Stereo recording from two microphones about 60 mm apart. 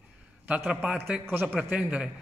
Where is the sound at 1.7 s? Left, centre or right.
Centre.